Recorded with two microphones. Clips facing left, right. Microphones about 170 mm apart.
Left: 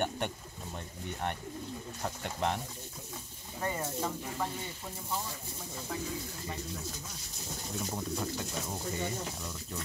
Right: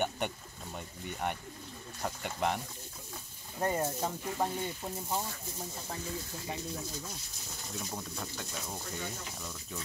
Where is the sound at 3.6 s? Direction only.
35° right (ahead or behind).